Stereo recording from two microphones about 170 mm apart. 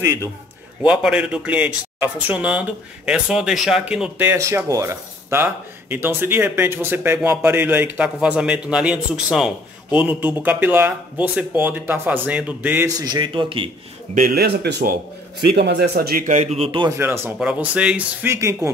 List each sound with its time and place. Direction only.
0.8 s speech: 5° right (ahead or behind)
12.8 s speech: 25° right (ahead or behind)
14.1 s speech: 60° right (ahead or behind)
15.5 s speech: 80° right
16.3 s speech: 40° right (ahead or behind)
16.9 s speech: 15° right (ahead or behind)